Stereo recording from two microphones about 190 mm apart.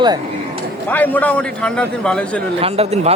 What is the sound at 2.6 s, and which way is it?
Speech, 30° right (ahead or behind).